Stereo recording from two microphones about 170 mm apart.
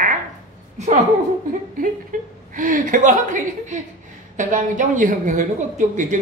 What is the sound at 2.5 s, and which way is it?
Speech, 50° right (ahead or behind).